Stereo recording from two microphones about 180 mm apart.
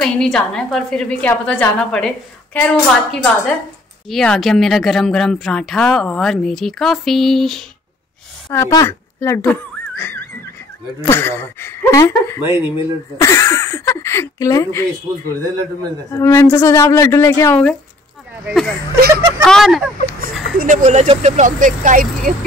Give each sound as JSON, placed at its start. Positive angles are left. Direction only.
{"t": 0.0, "sound": "speech", "side_deg": 5}
{"t": 8.5, "sound": "a woman's voice", "side_deg": 20}
{"t": 12.4, "sound": "speech", "side_deg": -15}
{"t": 13.2, "sound": "a woman's voice", "side_deg": 15}
{"t": 18.4, "sound": "speech", "side_deg": 0}
{"t": 18.9, "sound": "speech", "side_deg": -60}
{"t": 19.4, "sound": "speech", "side_deg": 0}
{"t": 20.5, "sound": "speech", "side_deg": -45}